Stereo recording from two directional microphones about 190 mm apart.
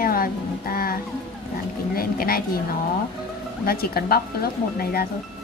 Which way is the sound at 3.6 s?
55° left (ahead or behind).